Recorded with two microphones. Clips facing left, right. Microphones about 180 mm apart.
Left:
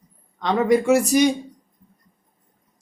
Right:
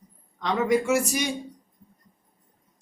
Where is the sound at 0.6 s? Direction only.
35° left (ahead or behind).